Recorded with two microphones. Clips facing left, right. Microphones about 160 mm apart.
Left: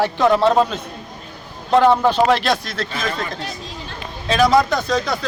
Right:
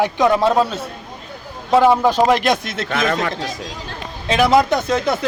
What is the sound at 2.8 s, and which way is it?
Speech, 70° right (ahead or behind).